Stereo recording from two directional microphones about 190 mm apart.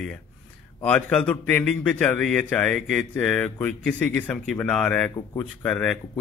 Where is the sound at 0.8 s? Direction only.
5° left (ahead or behind).